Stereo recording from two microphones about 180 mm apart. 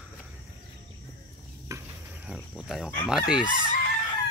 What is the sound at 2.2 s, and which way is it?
Speech, centre (ahead or behind).